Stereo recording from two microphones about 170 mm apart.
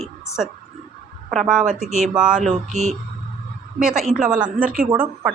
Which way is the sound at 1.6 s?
50° right (ahead or behind).